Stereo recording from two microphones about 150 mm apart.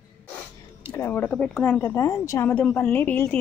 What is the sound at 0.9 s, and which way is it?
Speech, 15° left (ahead or behind).